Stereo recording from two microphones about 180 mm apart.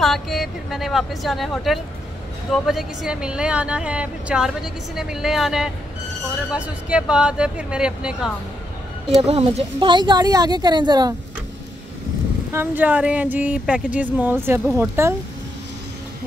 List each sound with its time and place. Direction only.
0.0 s speech: centre (ahead or behind)
9.2 s speech: 35° right (ahead or behind)
12.5 s speech: 10° right (ahead or behind)